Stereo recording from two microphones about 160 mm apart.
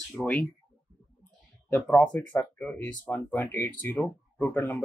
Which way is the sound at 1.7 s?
10° left (ahead or behind).